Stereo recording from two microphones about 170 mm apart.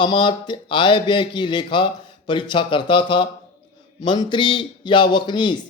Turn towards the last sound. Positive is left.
turn(degrees=25)  # may be behind; listen again after turning